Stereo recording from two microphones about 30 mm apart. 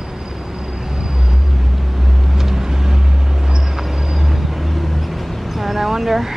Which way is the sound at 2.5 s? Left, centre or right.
Centre.